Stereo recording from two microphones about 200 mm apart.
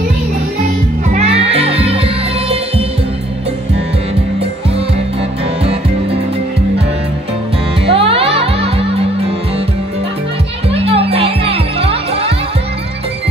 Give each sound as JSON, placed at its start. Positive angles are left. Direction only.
{"t": 1.1, "sound": "music", "side_deg": -30}
{"t": 7.8, "sound": "music", "side_deg": -30}
{"t": 10.7, "sound": "music", "side_deg": -30}